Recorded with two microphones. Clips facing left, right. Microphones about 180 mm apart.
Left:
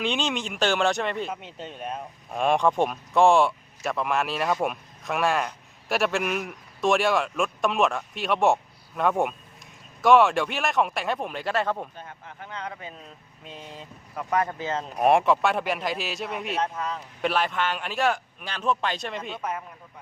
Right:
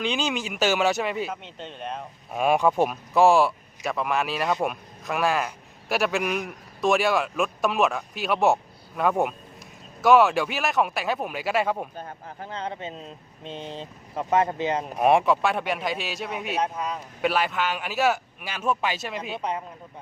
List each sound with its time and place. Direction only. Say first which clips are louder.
0.0 s a man's voice: even; centre (ahead or behind)
1.3 s speech: even; 10° left (ahead or behind)
2.3 s a man's voice: right 1 dB; 5° right (ahead or behind)
11.9 s speech: right 4 dB; 40° right (ahead or behind); by 14.8 s 20° right (ahead or behind)
14.9 s a man's voice: even; centre (ahead or behind)
16.6 s speech: right 2 dB; 15° right (ahead or behind)
17.2 s a man's voice: right 1 dB; centre (ahead or behind)
19.4 s speech: right 3 dB; 20° right (ahead or behind)